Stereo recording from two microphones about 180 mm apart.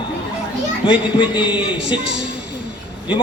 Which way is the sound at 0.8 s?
5° right (ahead or behind).